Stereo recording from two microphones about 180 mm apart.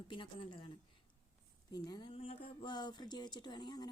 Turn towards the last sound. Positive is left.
turn(degrees=25)  # may be behind; listen again after turning